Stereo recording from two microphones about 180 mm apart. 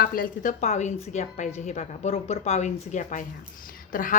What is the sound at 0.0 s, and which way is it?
A woman's voice, 55° left (ahead or behind).